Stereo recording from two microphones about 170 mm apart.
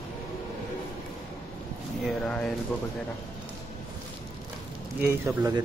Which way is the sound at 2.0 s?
5° left (ahead or behind).